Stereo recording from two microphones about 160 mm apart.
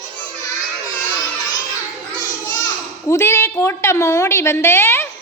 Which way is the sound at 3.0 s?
15° left (ahead or behind).